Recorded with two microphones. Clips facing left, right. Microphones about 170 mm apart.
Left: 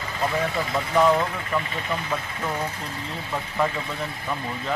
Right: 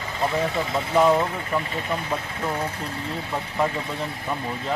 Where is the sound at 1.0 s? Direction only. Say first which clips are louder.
Right 1 dB; 15° right (ahead or behind).